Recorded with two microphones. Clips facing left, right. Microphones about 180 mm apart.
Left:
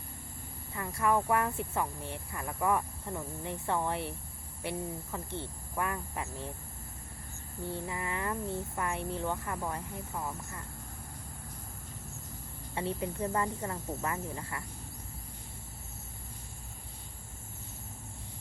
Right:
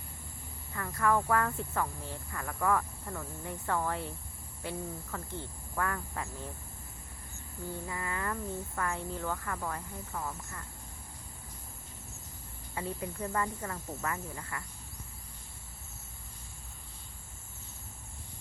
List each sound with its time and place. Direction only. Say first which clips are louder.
0.7 s speech: even; 15° left (ahead or behind)
7.6 s speech: left 2 dB; 20° left (ahead or behind)
12.7 s speech: left 3 dB; 25° left (ahead or behind)